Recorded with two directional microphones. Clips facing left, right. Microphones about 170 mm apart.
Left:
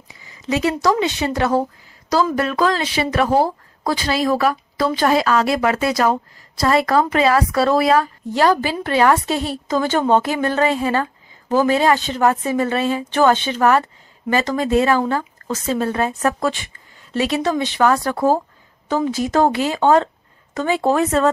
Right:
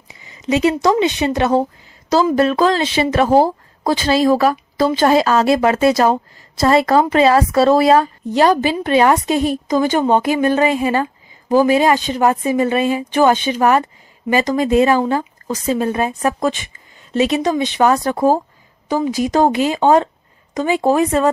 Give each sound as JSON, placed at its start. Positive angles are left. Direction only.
{"t": 0.1, "sound": "a woman's voice", "side_deg": -20}